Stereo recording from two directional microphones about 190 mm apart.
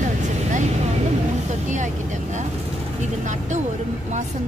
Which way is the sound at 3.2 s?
40° right (ahead or behind).